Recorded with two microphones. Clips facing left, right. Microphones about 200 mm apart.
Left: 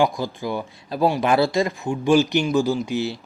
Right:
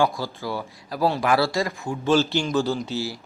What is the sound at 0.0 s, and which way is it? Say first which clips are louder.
A man's voice: left 2 dB; 15° left (ahead or behind).